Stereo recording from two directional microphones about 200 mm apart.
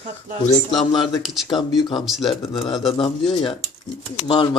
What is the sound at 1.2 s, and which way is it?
Speech, centre (ahead or behind).